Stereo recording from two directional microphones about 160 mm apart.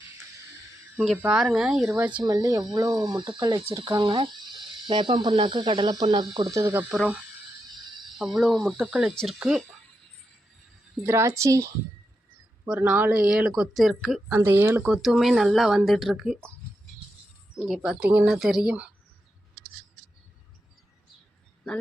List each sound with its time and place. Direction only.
0.9 s a woman's voice: centre (ahead or behind)
2.2 s speech: 25° right (ahead or behind)
8.2 s speech: centre (ahead or behind)
11.0 s a woman's voice: 15° right (ahead or behind)
12.6 s speech: 5° right (ahead or behind)
14.3 s a woman's voice: 15° right (ahead or behind)
14.8 s speech: 5° right (ahead or behind)
17.6 s speech: 5° right (ahead or behind)